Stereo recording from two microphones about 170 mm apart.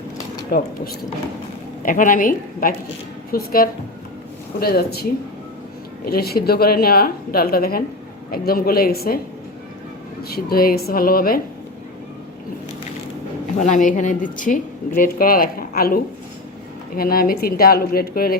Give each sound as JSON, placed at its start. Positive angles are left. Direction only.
{"t": 0.5, "sound": "speech", "side_deg": 55}
{"t": 1.8, "sound": "a woman's voice", "side_deg": 50}
{"t": 6.1, "sound": "speech", "side_deg": 65}
{"t": 10.3, "sound": "speech", "side_deg": 60}
{"t": 13.6, "sound": "a woman's voice", "side_deg": 50}